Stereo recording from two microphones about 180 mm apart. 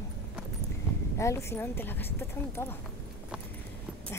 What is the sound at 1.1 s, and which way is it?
A child's voice, 15° left (ahead or behind).